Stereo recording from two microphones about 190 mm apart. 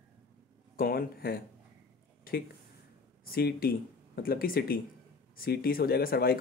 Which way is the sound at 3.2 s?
50° left (ahead or behind).